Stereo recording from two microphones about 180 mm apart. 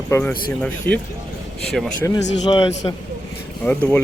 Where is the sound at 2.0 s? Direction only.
20° left (ahead or behind).